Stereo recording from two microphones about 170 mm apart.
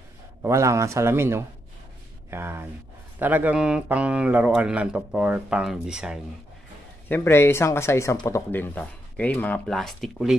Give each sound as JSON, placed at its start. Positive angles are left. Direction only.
{"t": 0.4, "sound": "speech", "side_deg": -20}
{"t": 7.1, "sound": "speech", "side_deg": 15}